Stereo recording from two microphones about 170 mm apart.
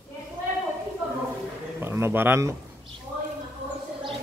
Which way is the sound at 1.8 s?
15° right (ahead or behind).